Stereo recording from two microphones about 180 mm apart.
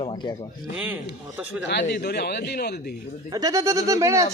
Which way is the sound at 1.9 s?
65° left (ahead or behind).